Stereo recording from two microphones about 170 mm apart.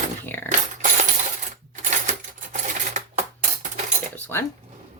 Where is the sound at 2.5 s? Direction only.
45° right (ahead or behind).